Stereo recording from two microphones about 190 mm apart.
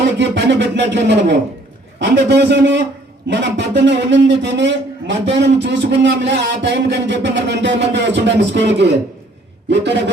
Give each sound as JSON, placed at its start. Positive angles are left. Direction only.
{"t": 0.2, "sound": "a man's voice", "side_deg": -65}